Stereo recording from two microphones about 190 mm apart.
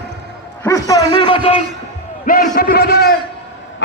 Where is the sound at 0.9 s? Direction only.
20° left (ahead or behind).